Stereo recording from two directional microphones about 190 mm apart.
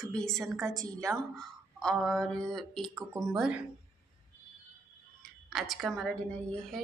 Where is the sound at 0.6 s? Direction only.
15° right (ahead or behind).